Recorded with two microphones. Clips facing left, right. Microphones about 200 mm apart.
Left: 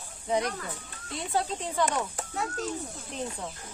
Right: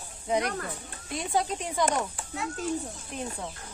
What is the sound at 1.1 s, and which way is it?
Speech, 15° right (ahead or behind).